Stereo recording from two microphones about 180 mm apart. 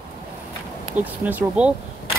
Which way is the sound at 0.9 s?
10° right (ahead or behind).